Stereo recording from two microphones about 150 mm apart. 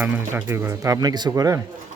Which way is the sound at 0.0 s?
10° right (ahead or behind).